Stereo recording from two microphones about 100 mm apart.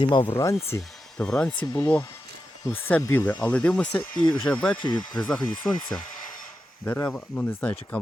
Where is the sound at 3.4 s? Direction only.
10° left (ahead or behind).